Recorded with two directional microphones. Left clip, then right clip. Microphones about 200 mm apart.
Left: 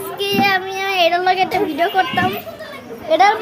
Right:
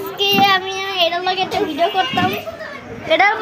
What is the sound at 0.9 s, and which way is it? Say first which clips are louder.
A child's voice: left 4 dB; 25° left (ahead or behind).